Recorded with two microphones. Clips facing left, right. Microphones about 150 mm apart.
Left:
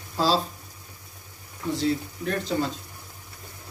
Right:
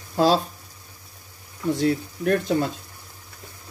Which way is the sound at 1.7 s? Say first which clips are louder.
Right 3 dB; 55° right (ahead or behind).